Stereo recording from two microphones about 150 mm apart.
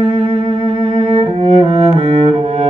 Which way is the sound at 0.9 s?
45° right (ahead or behind).